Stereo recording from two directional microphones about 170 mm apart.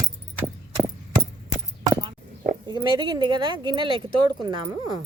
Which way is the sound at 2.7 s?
25° right (ahead or behind).